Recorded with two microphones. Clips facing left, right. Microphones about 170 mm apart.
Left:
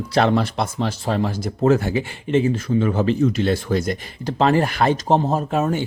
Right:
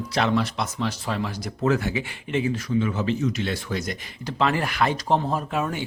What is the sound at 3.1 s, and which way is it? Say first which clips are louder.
Speech: left 7 dB; 55° left (ahead or behind).